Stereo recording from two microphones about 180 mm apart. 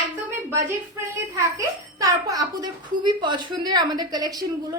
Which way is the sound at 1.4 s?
20° right (ahead or behind).